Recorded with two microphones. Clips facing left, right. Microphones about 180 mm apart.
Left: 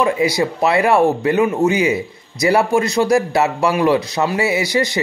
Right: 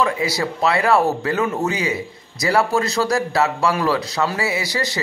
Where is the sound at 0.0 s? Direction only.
20° left (ahead or behind).